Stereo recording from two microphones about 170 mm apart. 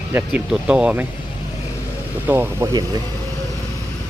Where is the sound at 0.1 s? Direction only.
10° right (ahead or behind).